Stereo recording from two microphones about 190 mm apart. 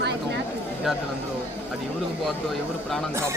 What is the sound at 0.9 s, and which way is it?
Speech, centre (ahead or behind).